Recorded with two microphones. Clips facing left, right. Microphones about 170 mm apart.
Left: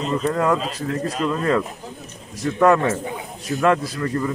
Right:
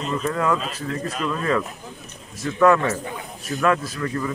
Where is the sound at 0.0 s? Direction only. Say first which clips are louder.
Left 3 dB; 35° left (ahead or behind).